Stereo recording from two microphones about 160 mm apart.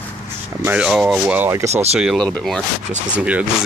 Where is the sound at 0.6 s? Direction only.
5° right (ahead or behind).